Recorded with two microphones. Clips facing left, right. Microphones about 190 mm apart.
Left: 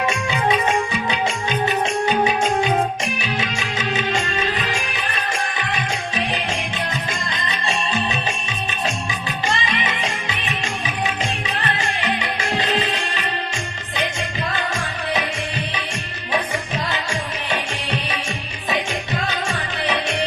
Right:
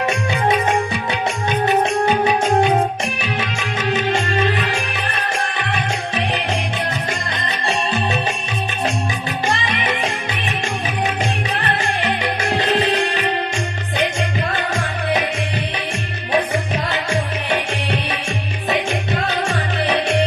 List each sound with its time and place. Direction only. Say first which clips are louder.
2.4 s music: right 4 dB; 60° right (ahead or behind)
6.1 s music: right 3 dB; 60° right (ahead or behind)
9.5 s music: right 2 dB; 60° right (ahead or behind)
11.6 s music: right 2 dB; 60° right (ahead or behind)